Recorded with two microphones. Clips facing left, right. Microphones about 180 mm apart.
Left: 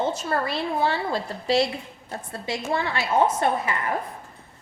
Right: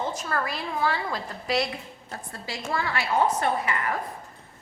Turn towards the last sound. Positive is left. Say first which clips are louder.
# left 2 dB
turn(degrees=25)  # may be behind; listen again after turning